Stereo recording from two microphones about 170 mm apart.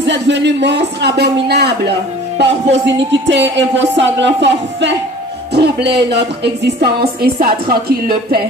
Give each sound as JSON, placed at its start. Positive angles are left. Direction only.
{"t": 0.0, "sound": "speech", "side_deg": -90}
{"t": 5.5, "sound": "speech", "side_deg": -75}